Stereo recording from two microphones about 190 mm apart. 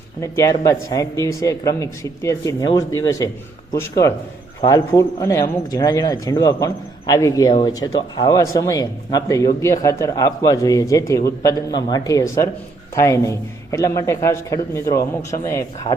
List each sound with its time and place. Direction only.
0.2 s a man's voice: 15° left (ahead or behind)